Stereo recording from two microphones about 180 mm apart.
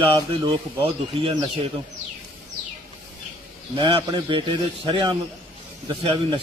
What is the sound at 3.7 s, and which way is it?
Speech, 25° right (ahead or behind).